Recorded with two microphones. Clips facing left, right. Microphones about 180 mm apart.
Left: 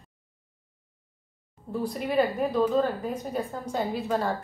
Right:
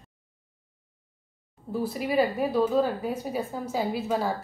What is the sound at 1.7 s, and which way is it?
A woman's voice, 5° right (ahead or behind).